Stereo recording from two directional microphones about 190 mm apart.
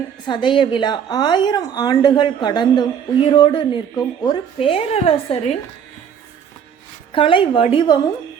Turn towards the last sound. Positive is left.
turn(degrees=25)  # may be behind; listen again after turning